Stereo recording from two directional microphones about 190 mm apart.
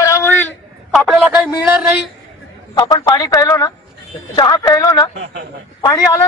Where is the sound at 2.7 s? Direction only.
20° left (ahead or behind).